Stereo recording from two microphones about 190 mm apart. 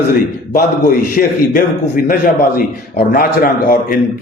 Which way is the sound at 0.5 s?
50° left (ahead or behind).